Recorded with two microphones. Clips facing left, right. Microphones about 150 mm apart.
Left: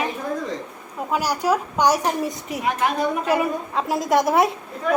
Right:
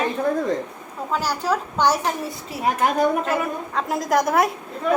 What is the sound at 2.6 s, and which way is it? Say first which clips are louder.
Speech: right 3 dB; 45° right (ahead or behind).